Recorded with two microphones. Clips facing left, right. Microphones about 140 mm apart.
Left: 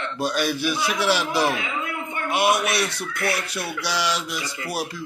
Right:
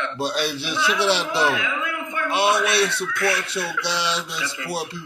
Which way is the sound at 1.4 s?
30° left (ahead or behind).